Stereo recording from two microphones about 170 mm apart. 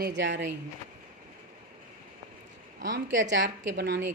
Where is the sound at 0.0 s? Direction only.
90° right.